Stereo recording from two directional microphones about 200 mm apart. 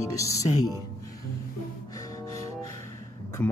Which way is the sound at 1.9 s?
15° left (ahead or behind).